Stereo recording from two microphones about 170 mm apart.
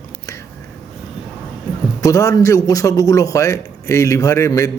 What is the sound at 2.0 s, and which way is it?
A man's voice, 20° left (ahead or behind).